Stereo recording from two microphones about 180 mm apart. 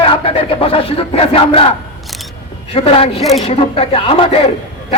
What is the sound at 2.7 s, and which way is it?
A man's voice, 35° left (ahead or behind).